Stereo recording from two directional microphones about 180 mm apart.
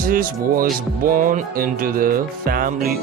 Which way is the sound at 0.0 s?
50° right (ahead or behind).